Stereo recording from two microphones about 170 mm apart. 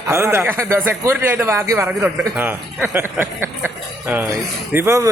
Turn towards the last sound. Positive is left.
turn(degrees=-15)  # may be behind; listen again after turning